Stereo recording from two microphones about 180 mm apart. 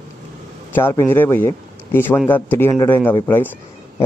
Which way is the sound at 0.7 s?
10° left (ahead or behind).